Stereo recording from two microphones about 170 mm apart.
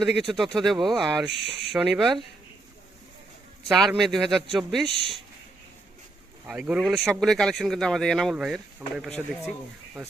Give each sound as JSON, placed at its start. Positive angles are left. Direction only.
{"t": 0.2, "sound": "speech", "side_deg": 0}
{"t": 1.3, "sound": "speech", "side_deg": -90}
{"t": 1.7, "sound": "speech", "side_deg": 0}
{"t": 3.7, "sound": "speech", "side_deg": 0}
{"t": 6.5, "sound": "speech", "side_deg": -5}